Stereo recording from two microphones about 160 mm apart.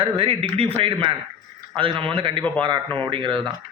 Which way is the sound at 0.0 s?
35° right (ahead or behind).